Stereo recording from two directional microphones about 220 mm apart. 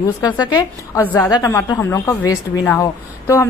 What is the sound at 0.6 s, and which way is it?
A woman's voice, 10° left (ahead or behind).